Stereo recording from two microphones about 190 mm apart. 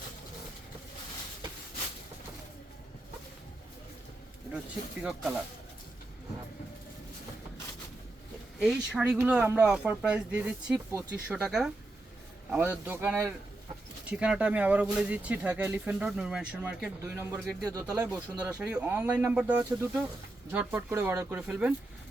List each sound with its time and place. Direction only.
5.0 s speech: 5° right (ahead or behind)
8.5 s speech: 5° right (ahead or behind)
17.6 s speech: 20° right (ahead or behind)